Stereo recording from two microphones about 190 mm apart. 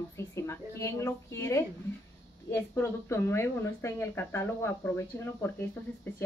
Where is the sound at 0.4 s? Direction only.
15° left (ahead or behind).